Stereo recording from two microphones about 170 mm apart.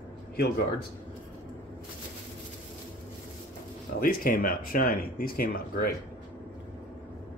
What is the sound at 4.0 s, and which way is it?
Speech, 55° left (ahead or behind).